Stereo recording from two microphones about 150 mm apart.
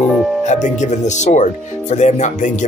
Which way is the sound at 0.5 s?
55° left (ahead or behind).